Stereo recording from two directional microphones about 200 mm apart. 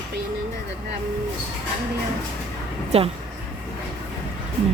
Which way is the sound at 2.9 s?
30° right (ahead or behind).